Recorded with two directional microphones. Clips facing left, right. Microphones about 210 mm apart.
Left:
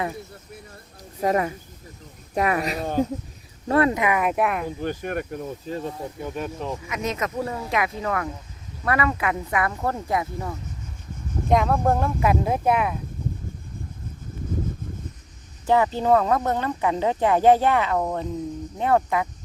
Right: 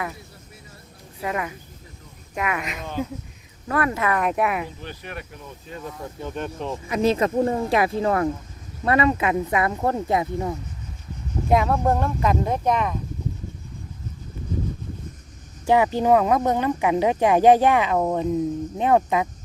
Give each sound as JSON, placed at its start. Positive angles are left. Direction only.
{"t": 1.2, "sound": "speech", "side_deg": 35}
{"t": 3.7, "sound": "speech", "side_deg": 25}
{"t": 4.2, "sound": "speech", "side_deg": 0}
{"t": 4.8, "sound": "speech", "side_deg": 45}
{"t": 6.2, "sound": "speech", "side_deg": 5}
{"t": 6.8, "sound": "speech", "side_deg": -30}
{"t": 11.4, "sound": "speech", "side_deg": 0}
{"t": 15.6, "sound": "speech", "side_deg": -15}